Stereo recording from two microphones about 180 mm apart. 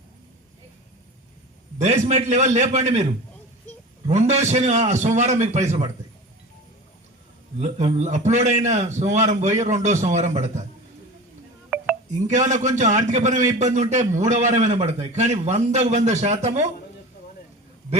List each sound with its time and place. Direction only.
1.8 s a man's voice: 40° right (ahead or behind)
7.6 s a man's voice: 40° right (ahead or behind)
11.7 s telephone dialing: 5° right (ahead or behind)
12.3 s a man's voice: 40° right (ahead or behind)